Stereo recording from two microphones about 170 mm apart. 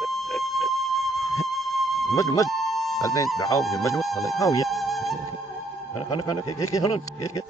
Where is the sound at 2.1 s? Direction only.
20° left (ahead or behind).